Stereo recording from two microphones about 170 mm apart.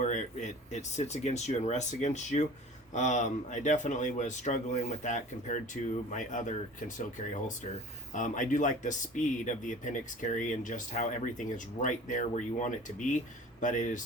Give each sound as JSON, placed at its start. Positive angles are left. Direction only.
{"t": 0.0, "sound": "speech", "side_deg": 45}
{"t": 8.1, "sound": "speech", "side_deg": 50}